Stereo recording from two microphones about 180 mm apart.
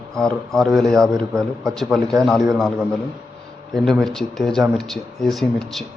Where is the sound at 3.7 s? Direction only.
Centre (ahead or behind).